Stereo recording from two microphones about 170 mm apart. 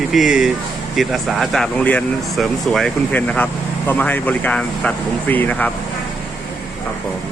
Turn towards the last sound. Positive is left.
turn(degrees=10)  # may be behind; listen again after turning